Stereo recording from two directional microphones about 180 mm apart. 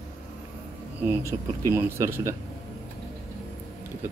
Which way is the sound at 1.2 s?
15° right (ahead or behind).